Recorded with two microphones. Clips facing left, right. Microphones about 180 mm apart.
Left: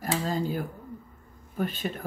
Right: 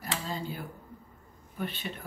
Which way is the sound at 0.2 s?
45° left (ahead or behind).